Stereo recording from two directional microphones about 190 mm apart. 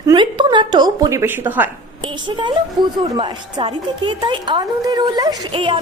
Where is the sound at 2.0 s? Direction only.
25° right (ahead or behind).